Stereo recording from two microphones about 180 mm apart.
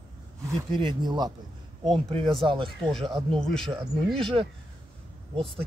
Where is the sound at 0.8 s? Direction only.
25° right (ahead or behind).